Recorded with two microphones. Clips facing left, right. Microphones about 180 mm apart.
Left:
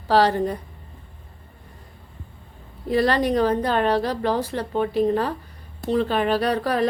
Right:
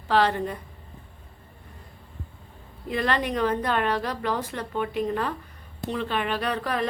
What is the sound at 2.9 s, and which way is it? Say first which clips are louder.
A woman's voice: left 6 dB; 35° left (ahead or behind).